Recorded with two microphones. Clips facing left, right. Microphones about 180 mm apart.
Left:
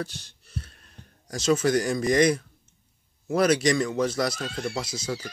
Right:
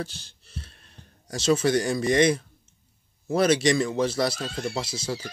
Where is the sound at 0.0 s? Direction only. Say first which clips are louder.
Left 1 dB; 25° right (ahead or behind).